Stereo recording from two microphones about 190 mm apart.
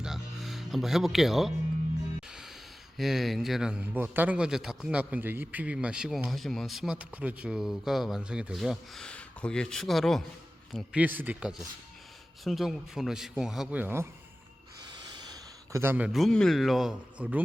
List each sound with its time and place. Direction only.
0.0 s music: centre (ahead or behind)
3.0 s speech: centre (ahead or behind)
15.1 s speech: 20° right (ahead or behind); by 17.4 s 5° right (ahead or behind)